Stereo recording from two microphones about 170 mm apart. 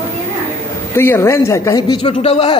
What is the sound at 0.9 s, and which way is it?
A man's voice, 15° left (ahead or behind).